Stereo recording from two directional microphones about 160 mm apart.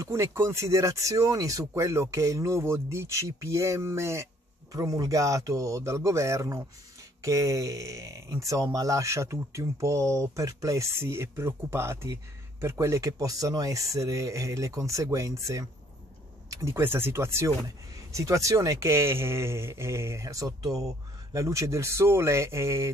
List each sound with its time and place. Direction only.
0.0 s speech: 15° right (ahead or behind)